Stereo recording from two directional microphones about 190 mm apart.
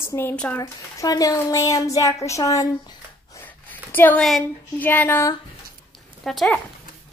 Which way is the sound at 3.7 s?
10° left (ahead or behind).